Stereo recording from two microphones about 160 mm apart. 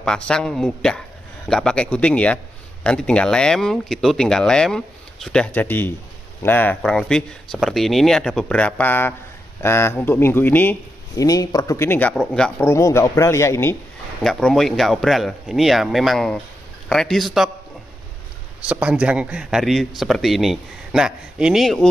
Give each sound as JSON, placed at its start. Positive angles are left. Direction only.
{"t": 0.0, "sound": "a man's voice", "side_deg": 5}
{"t": 14.2, "sound": "a man's voice", "side_deg": 0}
{"t": 18.6, "sound": "a man's voice", "side_deg": -10}